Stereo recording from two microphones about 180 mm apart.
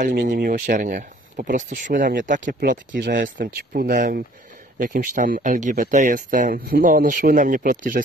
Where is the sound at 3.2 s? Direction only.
50° right (ahead or behind).